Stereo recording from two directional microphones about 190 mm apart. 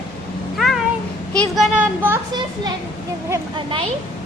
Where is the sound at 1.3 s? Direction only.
Centre (ahead or behind).